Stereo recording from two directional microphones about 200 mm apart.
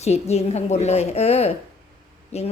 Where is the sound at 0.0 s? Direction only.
35° left (ahead or behind).